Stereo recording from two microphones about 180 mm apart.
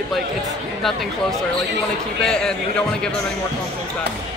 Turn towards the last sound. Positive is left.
turn(degrees=5)  # may be behind; listen again after turning